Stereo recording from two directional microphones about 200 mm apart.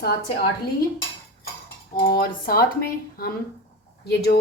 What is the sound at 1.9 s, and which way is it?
Speech, 50° left (ahead or behind).